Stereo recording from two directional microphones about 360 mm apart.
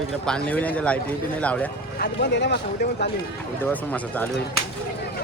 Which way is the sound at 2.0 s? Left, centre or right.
Left.